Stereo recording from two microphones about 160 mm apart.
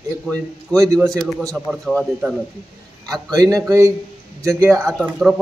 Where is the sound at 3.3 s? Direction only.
20° right (ahead or behind).